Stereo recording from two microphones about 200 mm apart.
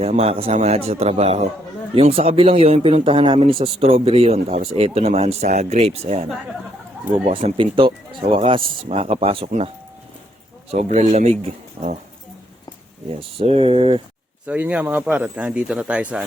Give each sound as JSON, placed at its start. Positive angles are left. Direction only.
{"t": 0.0, "sound": "a man's voice", "side_deg": -30}
{"t": 7.3, "sound": "a man's voice", "side_deg": -30}
{"t": 10.7, "sound": "speech", "side_deg": -35}
{"t": 13.1, "sound": "a man's voice", "side_deg": -30}
{"t": 14.4, "sound": "speech", "side_deg": -5}